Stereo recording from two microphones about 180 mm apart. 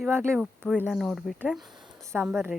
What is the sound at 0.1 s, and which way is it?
Speech, 15° right (ahead or behind).